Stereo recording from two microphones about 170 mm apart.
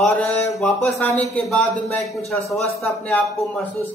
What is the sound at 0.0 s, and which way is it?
A man's voice, 10° left (ahead or behind).